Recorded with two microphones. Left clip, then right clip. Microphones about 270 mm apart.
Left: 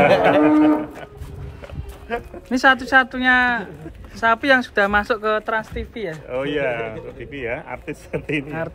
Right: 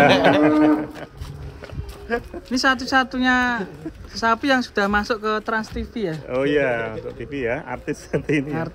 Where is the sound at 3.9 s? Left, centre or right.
Right.